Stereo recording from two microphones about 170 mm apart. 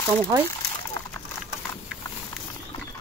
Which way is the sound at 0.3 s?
20° right (ahead or behind).